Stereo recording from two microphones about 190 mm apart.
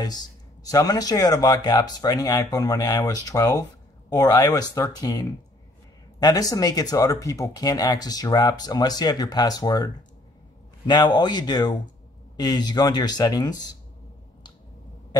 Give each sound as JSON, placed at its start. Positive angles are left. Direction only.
{"t": 0.0, "sound": "speech", "side_deg": 20}
{"t": 10.9, "sound": "speech", "side_deg": 20}